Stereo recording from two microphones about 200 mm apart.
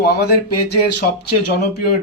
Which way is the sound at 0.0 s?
55° left (ahead or behind).